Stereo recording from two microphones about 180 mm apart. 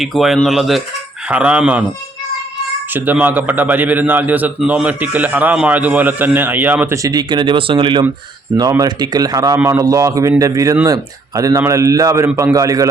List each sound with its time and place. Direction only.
0.0 s a man's voice: centre (ahead or behind)
2.9 s a man's voice: 10° right (ahead or behind)